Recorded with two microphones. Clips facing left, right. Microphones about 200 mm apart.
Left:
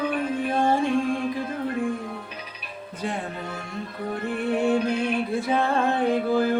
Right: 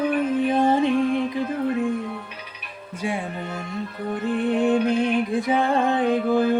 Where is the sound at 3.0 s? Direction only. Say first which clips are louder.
Right 3 dB; 10° right (ahead or behind).